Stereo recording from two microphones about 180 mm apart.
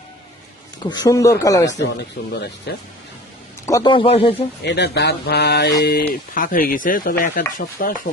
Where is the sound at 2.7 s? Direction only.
65° left (ahead or behind).